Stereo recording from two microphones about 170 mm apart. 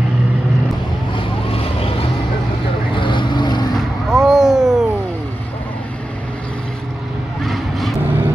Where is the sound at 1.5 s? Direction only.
35° left (ahead or behind).